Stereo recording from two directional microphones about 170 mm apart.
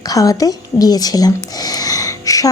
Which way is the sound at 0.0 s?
20° left (ahead or behind).